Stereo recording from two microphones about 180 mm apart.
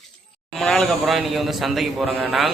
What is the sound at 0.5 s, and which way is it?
A man's voice, centre (ahead or behind).